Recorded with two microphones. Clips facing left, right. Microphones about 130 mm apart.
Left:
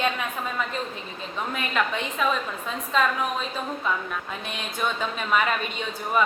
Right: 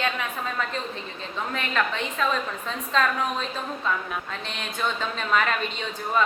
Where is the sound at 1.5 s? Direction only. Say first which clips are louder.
Left 1 dB; 10° left (ahead or behind).